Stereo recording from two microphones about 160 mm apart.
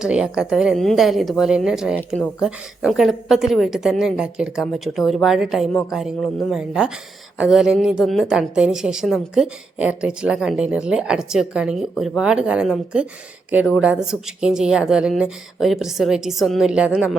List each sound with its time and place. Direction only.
0.0 s a woman's voice: 5° right (ahead or behind)